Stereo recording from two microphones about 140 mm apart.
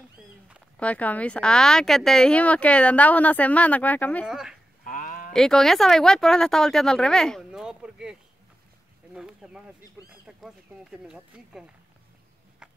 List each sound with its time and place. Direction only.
0.7 s speech: 10° left (ahead or behind)
4.3 s speech: 5° right (ahead or behind)
4.8 s a sound: 75° left (ahead or behind)
5.3 s speech: centre (ahead or behind)